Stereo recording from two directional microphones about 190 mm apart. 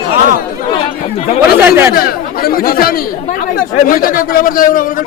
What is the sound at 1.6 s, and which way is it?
Speech, 10° right (ahead or behind).